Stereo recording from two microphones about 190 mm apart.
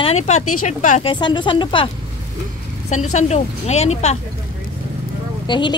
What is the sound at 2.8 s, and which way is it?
A woman's voice, 35° left (ahead or behind).